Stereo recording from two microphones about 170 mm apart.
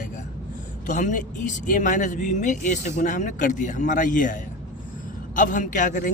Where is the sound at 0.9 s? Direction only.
50° left (ahead or behind).